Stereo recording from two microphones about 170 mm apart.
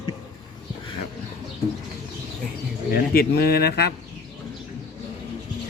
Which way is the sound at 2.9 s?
60° left (ahead or behind).